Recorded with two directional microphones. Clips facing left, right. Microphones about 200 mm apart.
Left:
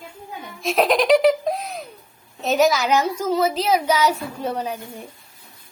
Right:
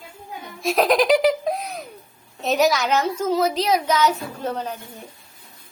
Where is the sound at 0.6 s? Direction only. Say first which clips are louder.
Even; centre (ahead or behind).